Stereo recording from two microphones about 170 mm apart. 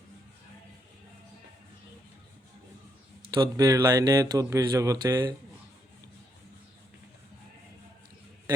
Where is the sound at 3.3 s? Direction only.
25° right (ahead or behind).